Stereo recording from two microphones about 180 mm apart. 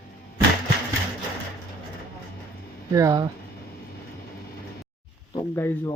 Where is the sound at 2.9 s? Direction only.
20° right (ahead or behind).